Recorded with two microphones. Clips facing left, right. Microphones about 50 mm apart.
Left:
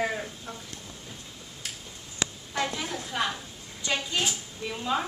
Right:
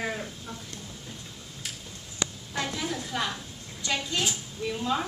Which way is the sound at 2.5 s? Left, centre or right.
Centre.